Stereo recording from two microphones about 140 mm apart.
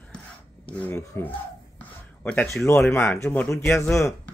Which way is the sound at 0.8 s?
15° left (ahead or behind).